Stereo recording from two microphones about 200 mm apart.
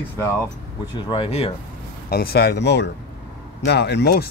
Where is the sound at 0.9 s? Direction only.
25° left (ahead or behind).